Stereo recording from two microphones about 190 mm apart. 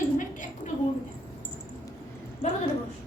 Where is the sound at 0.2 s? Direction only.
45° left (ahead or behind).